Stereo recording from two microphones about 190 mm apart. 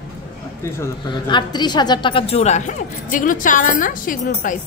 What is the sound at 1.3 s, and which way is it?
Speech, 25° left (ahead or behind).